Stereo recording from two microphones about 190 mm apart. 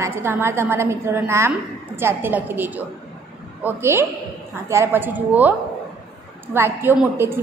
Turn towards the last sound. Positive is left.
turn(degrees=-10)  # may be behind; listen again after turning